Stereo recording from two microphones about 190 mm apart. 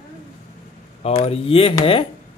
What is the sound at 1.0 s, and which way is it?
Speech, 30° left (ahead or behind).